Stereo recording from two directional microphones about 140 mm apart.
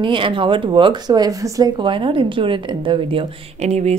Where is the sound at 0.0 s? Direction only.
35° right (ahead or behind).